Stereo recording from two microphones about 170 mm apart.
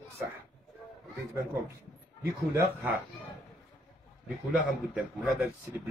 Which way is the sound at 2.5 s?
10° right (ahead or behind).